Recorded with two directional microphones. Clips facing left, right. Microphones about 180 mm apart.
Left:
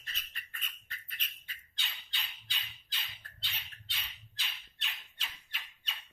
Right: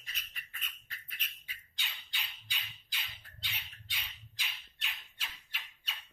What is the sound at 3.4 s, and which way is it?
Squawk, 10° right (ahead or behind).